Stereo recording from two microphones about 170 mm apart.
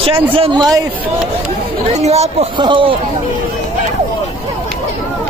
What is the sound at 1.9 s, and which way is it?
Speech, 40° right (ahead or behind).